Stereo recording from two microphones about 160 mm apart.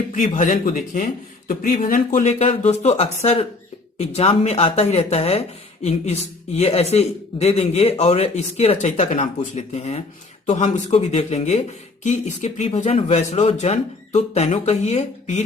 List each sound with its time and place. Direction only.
0.2 s speech: 55° left (ahead or behind)
2.4 s a man's voice: 40° left (ahead or behind)